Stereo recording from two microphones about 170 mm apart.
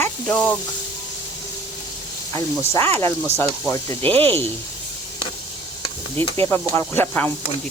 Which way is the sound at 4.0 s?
35° right (ahead or behind).